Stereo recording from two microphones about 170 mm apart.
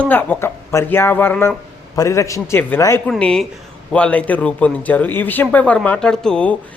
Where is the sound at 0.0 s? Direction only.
10° left (ahead or behind).